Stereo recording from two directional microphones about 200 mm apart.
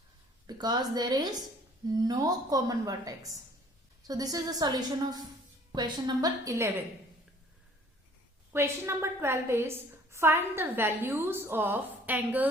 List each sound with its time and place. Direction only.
0.4 s a woman's voice: 20° right (ahead or behind)
8.5 s a woman's voice: 15° right (ahead or behind)